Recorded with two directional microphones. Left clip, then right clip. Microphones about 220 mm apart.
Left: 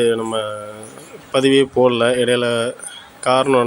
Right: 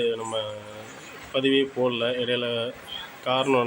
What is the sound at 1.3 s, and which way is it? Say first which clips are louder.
A man's voice: left 9 dB; 30° left (ahead or behind).